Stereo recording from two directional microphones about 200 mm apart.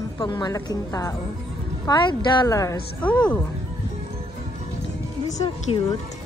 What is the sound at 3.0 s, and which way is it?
Speech, 5° left (ahead or behind).